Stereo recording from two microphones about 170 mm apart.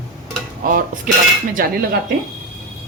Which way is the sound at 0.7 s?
50° right (ahead or behind).